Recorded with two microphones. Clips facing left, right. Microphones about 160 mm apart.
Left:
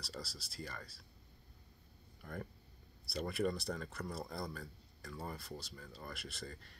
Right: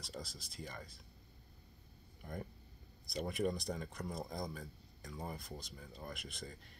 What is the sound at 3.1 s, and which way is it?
Speech, 15° right (ahead or behind).